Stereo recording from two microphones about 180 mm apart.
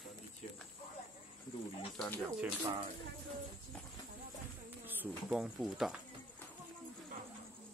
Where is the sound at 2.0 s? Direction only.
Centre (ahead or behind).